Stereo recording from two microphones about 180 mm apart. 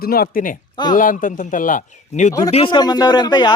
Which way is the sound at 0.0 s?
55° left (ahead or behind).